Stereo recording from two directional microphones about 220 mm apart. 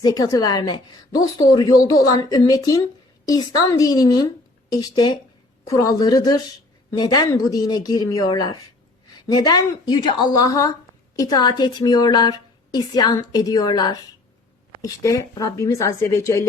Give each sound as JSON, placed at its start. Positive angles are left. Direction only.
{"t": 0.0, "sound": "a woman's voice", "side_deg": 15}